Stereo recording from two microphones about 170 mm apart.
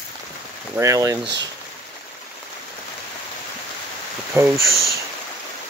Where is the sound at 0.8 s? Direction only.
20° right (ahead or behind).